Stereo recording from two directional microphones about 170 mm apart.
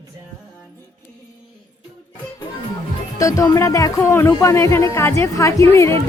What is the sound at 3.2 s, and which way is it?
Music, 20° left (ahead or behind).